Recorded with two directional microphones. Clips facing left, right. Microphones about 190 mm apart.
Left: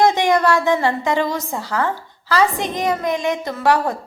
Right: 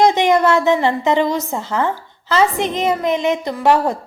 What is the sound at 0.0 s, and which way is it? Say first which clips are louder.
A woman's voice: right 2 dB; 20° right (ahead or behind).